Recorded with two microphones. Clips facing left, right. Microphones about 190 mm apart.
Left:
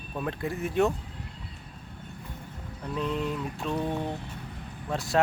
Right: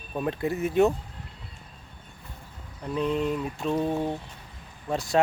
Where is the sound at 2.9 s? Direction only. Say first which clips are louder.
Right 4 dB; centre (ahead or behind).